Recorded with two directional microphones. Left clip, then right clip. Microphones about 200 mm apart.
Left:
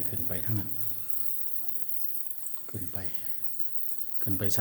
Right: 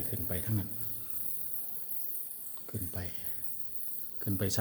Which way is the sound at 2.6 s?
10° right (ahead or behind).